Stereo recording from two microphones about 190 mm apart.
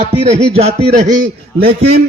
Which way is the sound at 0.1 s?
35° right (ahead or behind).